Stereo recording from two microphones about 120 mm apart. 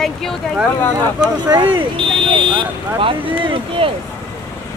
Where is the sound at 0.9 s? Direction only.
35° right (ahead or behind).